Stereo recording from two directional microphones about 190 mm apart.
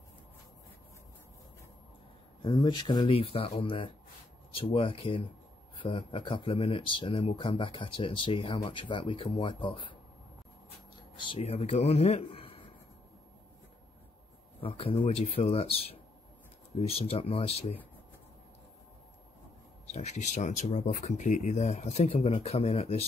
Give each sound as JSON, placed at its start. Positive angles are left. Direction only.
{"t": 2.4, "sound": "speech", "side_deg": 25}
{"t": 11.1, "sound": "speech", "side_deg": 30}
{"t": 14.6, "sound": "speech", "side_deg": 30}
{"t": 19.9, "sound": "speech", "side_deg": 35}